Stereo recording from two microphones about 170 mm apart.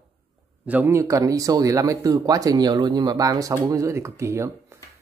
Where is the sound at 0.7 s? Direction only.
15° right (ahead or behind).